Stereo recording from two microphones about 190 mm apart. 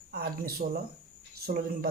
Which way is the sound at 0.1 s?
50° right (ahead or behind).